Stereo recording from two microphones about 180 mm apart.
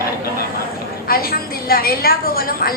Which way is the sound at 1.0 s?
55° left (ahead or behind).